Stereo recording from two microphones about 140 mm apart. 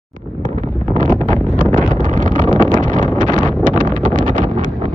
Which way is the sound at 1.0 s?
65° right (ahead or behind).